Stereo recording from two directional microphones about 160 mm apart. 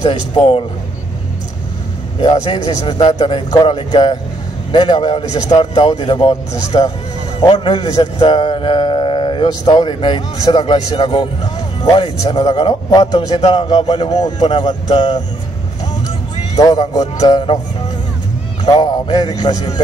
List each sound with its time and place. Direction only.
0.0 s speech: 30° left (ahead or behind)
2.1 s speech: 30° left (ahead or behind)
3.0 s speech: 40° left (ahead or behind)
6.1 s a man's voice: 25° left (ahead or behind)
13.3 s speech: 45° left (ahead or behind)
14.4 s a man's voice: 30° left (ahead or behind)
16.5 s a man's voice: 25° left (ahead or behind)
18.7 s a man's voice: 25° left (ahead or behind)